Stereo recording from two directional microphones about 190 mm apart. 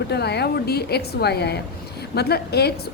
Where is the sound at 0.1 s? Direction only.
60° left (ahead or behind).